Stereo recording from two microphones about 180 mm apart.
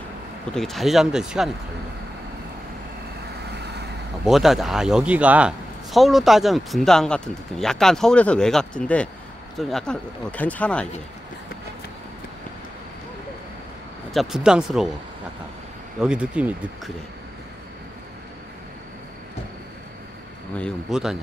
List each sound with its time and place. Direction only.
0.6 s a man's voice: centre (ahead or behind)
3.5 s vehicle: 70° right (ahead or behind)
4.2 s a man's voice: centre (ahead or behind)
14.1 s a man's voice: 5° right (ahead or behind)
16.0 s speech: 5° right (ahead or behind)
20.5 s a man's voice: centre (ahead or behind)